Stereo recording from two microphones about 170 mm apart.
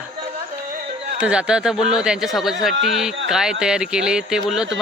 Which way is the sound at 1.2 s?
5° right (ahead or behind).